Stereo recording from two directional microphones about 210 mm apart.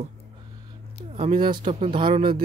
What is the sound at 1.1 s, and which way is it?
Speech, 30° right (ahead or behind).